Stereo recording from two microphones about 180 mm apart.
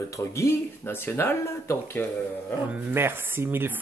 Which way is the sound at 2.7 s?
10° right (ahead or behind).